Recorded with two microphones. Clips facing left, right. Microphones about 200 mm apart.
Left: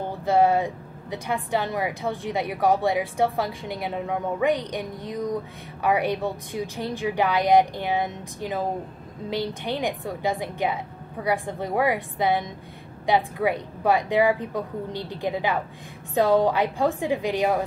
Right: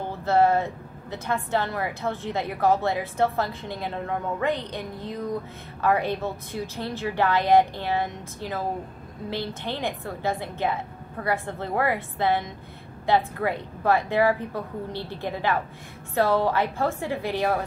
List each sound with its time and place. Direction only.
0.2 s a woman's voice: 15° left (ahead or behind)